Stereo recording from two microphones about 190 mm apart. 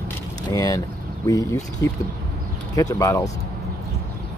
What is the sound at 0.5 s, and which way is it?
Speech, 20° left (ahead or behind).